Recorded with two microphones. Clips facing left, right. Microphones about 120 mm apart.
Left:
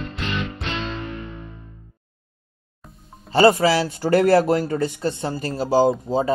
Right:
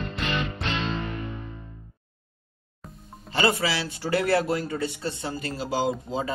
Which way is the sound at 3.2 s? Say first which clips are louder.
Left 9 dB; 35° left (ahead or behind).